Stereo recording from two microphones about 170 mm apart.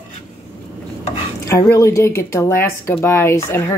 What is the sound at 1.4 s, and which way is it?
Speech, 15° left (ahead or behind).